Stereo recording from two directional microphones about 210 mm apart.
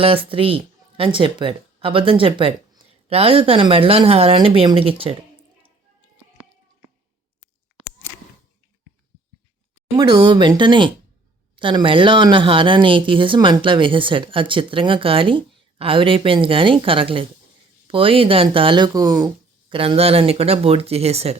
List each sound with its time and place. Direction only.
0.0 s speech: 25° right (ahead or behind)
10.0 s speech: 20° right (ahead or behind)
19.7 s speech: 25° right (ahead or behind)